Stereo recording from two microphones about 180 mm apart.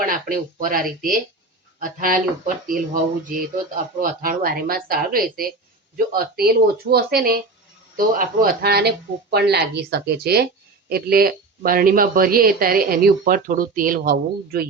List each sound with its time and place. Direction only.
0.0 s speech: 50° right (ahead or behind)